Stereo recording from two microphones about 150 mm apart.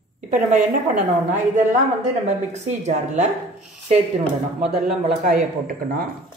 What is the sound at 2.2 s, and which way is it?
Speech, 50° right (ahead or behind).